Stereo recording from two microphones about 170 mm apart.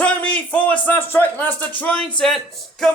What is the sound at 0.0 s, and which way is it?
A man's voice, 10° left (ahead or behind).